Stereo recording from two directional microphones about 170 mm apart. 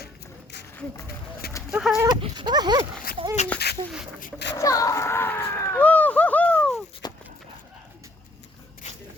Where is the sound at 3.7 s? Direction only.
75° left (ahead or behind).